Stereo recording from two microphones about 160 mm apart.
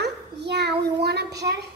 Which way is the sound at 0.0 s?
90° right.